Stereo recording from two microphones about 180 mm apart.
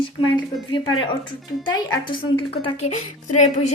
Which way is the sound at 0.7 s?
25° left (ahead or behind).